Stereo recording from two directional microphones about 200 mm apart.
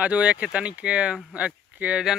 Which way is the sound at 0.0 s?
5° right (ahead or behind).